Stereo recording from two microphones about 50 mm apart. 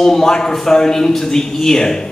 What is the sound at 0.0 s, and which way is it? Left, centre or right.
A man's voice, centre.